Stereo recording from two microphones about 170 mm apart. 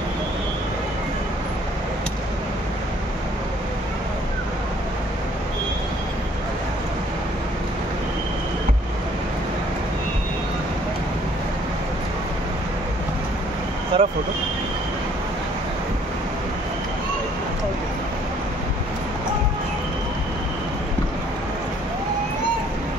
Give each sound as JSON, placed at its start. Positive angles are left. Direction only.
{"t": 13.9, "sound": "vehicle", "side_deg": -30}